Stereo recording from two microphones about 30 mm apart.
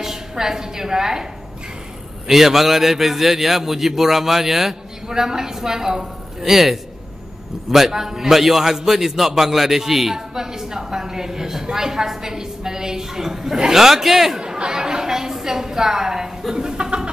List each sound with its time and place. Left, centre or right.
0.0 s a woman's voice: centre
2.2 s a man's voice: centre
5.0 s a man's voice: centre
14.4 s a man's voice: right